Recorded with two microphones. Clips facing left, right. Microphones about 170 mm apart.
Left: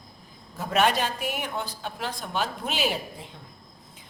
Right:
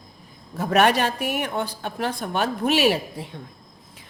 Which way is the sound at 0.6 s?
65° right (ahead or behind).